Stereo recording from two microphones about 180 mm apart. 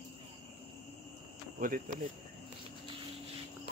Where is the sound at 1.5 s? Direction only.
50° right (ahead or behind).